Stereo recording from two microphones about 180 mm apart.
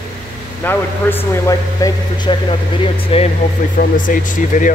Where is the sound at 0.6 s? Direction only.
10° left (ahead or behind); by 3.2 s 30° left (ahead or behind).